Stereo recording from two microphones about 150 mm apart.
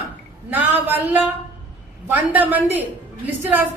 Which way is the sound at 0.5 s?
10° right (ahead or behind).